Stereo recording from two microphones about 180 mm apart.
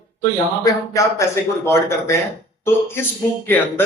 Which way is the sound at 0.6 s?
15° left (ahead or behind).